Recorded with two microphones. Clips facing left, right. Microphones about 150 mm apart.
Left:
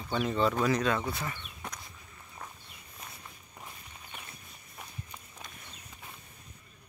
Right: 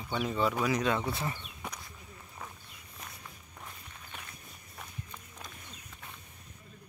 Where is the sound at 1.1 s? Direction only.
30° right (ahead or behind).